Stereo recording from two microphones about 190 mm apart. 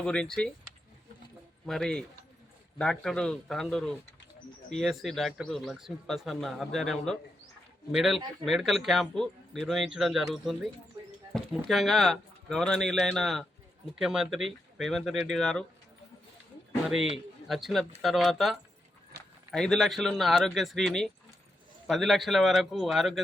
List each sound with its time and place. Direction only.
0.0 s speech: 5° left (ahead or behind)
1.6 s speech: 5° left (ahead or behind)
17.5 s speech: centre (ahead or behind)
19.1 s clip-clop: 55° right (ahead or behind)
19.5 s speech: centre (ahead or behind)